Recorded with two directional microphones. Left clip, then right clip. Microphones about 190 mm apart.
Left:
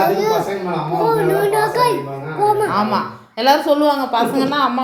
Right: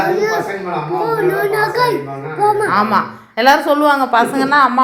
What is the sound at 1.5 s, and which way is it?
Child singing, 10° left (ahead or behind).